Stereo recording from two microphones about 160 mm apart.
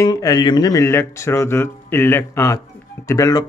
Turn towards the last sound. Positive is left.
turn(degrees=20)  # may be behind; listen again after turning